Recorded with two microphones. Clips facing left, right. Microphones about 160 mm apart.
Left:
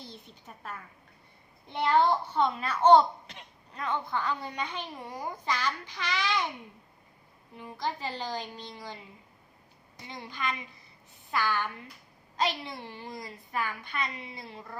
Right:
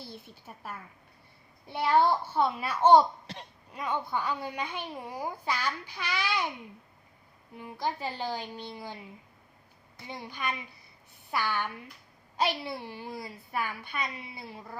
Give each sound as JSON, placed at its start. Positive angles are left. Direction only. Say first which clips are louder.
{"t": 0.1, "sound": "a child's voice", "louder": "right 2 dB", "side_deg": -10}
{"t": 3.2, "sound": "speech", "louder": "right 6 dB", "side_deg": -35}
{"t": 3.7, "sound": "a child's voice", "louder": "even", "side_deg": -10}
{"t": 7.5, "sound": "a child's voice", "louder": "right 1 dB", "side_deg": -15}
{"t": 10.1, "sound": "a child's voice", "louder": "even", "side_deg": -10}